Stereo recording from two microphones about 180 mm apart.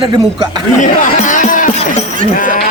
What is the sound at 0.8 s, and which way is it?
Speech, 45° left (ahead or behind).